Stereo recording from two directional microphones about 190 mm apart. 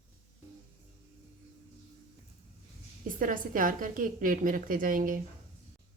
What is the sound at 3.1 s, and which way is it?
A woman's voice, 45° right (ahead or behind).